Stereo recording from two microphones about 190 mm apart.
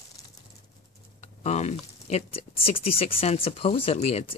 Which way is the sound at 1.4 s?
35° left (ahead or behind).